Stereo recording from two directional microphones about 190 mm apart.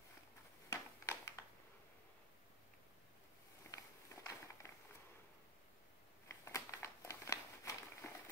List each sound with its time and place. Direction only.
0.7 s a sound: 15° left (ahead or behind)
3.7 s walk: 15° left (ahead or behind)
6.2 s crumpling: 15° left (ahead or behind)